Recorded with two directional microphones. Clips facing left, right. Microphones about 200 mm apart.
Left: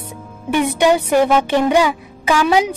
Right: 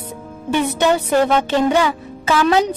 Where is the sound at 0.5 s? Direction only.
15° left (ahead or behind).